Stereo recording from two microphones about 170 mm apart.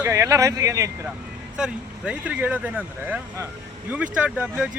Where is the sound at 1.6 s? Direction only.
5° right (ahead or behind).